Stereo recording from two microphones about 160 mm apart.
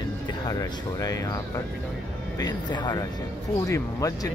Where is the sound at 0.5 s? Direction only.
20° left (ahead or behind).